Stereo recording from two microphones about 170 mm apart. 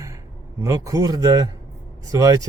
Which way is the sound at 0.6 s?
20° right (ahead or behind).